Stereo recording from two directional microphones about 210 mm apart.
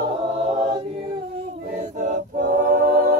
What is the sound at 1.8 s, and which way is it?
A capella, 35° right (ahead or behind).